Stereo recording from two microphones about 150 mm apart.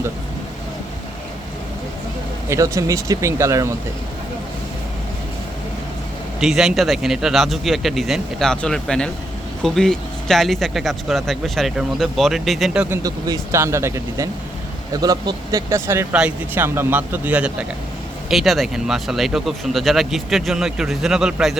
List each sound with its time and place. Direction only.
2.5 s speech: 20° right (ahead or behind)
6.4 s speech: centre (ahead or behind)
13.0 s a man's voice: 25° right (ahead or behind); by 21.6 s 5° right (ahead or behind)